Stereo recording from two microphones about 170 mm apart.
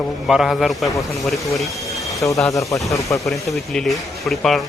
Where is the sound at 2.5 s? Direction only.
20° left (ahead or behind).